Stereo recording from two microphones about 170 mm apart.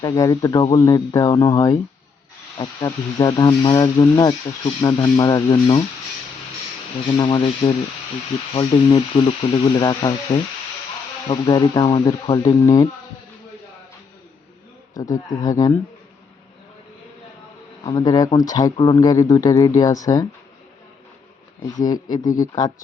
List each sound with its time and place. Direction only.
0.0 s speech: 20° left (ahead or behind)
7.2 s speech: 25° left (ahead or behind)
15.1 s speech: 20° left (ahead or behind)
17.8 s speech: 20° left (ahead or behind)
21.8 s speech: 20° left (ahead or behind)